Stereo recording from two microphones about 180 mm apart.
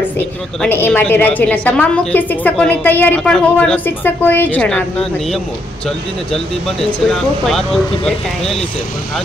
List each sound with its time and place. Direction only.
0.6 s a woman's voice: 10° left (ahead or behind)